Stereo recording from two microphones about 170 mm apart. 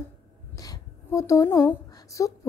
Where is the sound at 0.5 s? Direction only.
20° left (ahead or behind).